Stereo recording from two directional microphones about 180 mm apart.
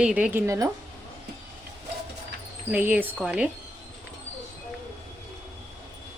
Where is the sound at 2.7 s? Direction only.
10° right (ahead or behind).